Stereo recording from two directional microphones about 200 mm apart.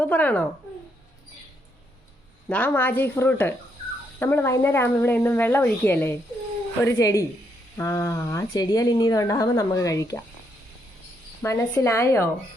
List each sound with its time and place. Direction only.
0.0 s speech: 5° left (ahead or behind)
2.5 s a woman's voice: 10° left (ahead or behind)
11.4 s a woman's voice: 15° left (ahead or behind)